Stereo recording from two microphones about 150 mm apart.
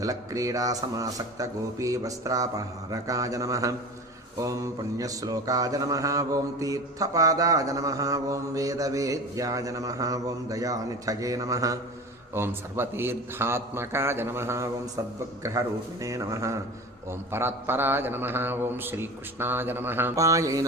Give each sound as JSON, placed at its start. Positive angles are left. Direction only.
{"t": 0.0, "sound": "mantra", "side_deg": -25}
{"t": 12.3, "sound": "speech", "side_deg": -15}
{"t": 15.4, "sound": "mantra", "side_deg": -20}
{"t": 17.1, "sound": "speech", "side_deg": -15}